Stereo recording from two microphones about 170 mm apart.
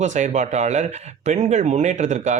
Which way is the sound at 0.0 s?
45° right (ahead or behind).